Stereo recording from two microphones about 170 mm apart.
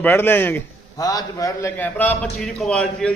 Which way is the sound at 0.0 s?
15° left (ahead or behind).